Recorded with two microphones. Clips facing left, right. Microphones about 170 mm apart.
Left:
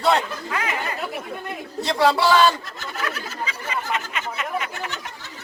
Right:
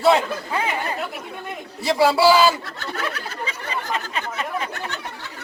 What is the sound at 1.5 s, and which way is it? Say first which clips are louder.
A man's voice: right 4 dB; 5° right (ahead or behind).